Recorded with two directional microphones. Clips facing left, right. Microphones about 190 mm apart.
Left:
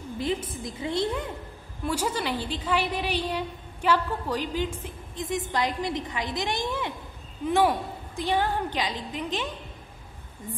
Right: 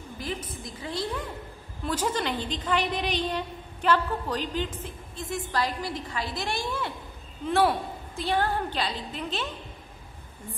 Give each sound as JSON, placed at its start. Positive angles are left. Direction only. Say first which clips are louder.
{"t": 0.2, "sound": "a woman's voice", "louder": "left 6 dB", "side_deg": 25}
{"t": 1.9, "sound": "a woman's voice", "louder": "even", "side_deg": 10}